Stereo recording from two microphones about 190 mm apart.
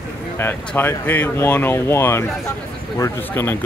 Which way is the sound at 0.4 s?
10° left (ahead or behind).